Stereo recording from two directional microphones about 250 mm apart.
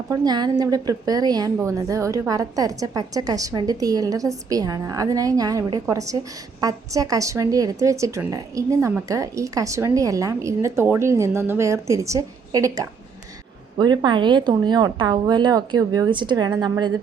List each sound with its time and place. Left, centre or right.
0.1 s a woman's voice: centre